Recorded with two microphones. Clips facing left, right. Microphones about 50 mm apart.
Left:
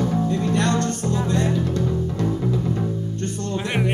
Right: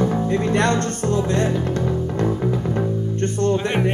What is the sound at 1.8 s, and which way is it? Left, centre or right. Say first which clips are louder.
Music: right 2 dB; right.